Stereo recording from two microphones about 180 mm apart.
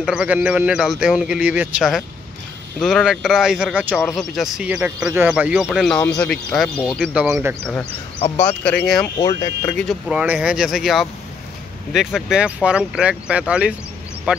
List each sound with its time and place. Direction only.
0.0 s speech: 5° right (ahead or behind)
8.4 s speech: 10° left (ahead or behind)
9.2 s speech: 20° left (ahead or behind)
9.8 s speech: centre (ahead or behind)